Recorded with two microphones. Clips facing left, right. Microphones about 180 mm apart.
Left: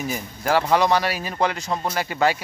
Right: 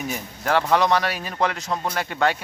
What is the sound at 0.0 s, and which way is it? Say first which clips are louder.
A man's voice: left 2 dB; centre (ahead or behind).